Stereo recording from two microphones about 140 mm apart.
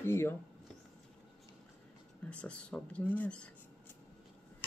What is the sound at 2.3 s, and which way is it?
Speech, 10° left (ahead or behind).